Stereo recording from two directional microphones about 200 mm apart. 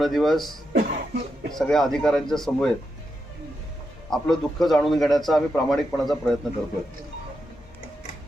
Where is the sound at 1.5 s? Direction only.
Centre (ahead or behind).